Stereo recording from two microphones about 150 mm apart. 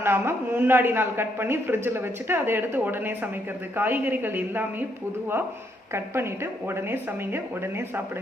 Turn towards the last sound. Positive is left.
turn(degrees=-15)  # may be behind; listen again after turning